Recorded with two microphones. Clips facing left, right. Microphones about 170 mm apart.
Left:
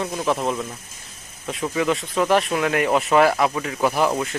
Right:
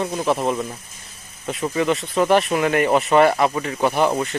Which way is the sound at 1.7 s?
Centre (ahead or behind).